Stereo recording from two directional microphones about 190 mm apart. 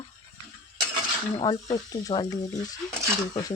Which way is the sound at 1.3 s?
20° left (ahead or behind).